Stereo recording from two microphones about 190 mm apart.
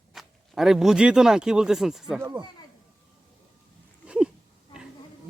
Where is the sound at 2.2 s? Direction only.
20° right (ahead or behind).